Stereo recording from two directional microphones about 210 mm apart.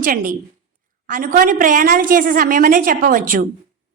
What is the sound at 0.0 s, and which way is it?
A woman's voice, 40° right (ahead or behind).